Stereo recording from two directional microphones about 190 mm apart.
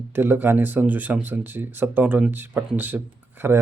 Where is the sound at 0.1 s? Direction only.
10° right (ahead or behind).